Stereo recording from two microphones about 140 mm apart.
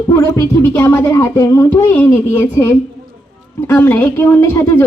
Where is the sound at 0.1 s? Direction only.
15° left (ahead or behind).